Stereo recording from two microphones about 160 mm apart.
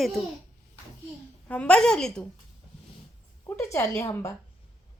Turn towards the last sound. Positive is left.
turn(degrees=15)  # may be behind; listen again after turning